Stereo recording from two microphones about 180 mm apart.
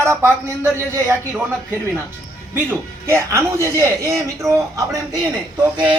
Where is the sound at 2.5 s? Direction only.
15° right (ahead or behind).